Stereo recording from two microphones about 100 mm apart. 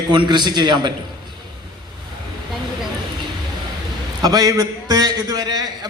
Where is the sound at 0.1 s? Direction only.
50° right (ahead or behind).